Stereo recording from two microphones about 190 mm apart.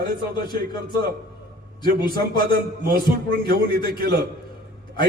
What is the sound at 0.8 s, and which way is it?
Speech, 55° right (ahead or behind).